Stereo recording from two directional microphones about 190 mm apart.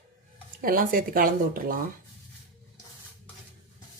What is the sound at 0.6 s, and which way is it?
Speech, 45° right (ahead or behind).